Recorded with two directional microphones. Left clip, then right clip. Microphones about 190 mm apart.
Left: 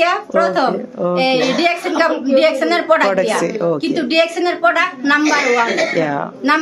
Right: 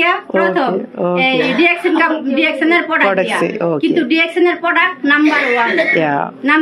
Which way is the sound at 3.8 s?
35° left (ahead or behind).